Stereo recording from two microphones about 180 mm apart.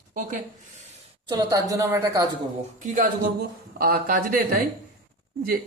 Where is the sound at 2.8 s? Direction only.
45° right (ahead or behind).